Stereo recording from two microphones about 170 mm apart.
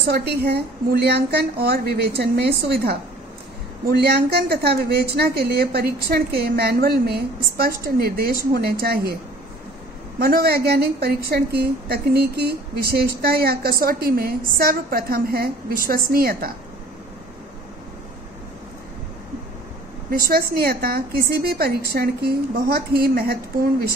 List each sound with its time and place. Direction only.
0.0 s a woman's voice: 70° right (ahead or behind)
20.1 s a woman's voice: 60° right (ahead or behind)